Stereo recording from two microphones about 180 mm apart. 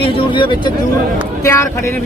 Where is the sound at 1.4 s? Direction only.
15° left (ahead or behind).